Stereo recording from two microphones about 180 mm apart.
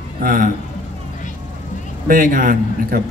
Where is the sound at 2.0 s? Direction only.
50° right (ahead or behind).